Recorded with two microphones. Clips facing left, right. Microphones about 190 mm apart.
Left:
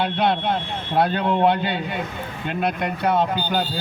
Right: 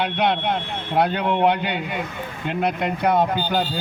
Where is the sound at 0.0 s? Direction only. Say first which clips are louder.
Even; 15° right (ahead or behind).